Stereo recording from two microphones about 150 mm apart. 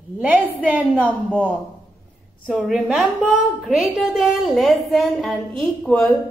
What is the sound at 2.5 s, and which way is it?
A woman's voice, 5° right (ahead or behind).